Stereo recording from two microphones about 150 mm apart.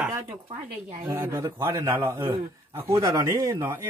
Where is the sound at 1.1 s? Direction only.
15° right (ahead or behind).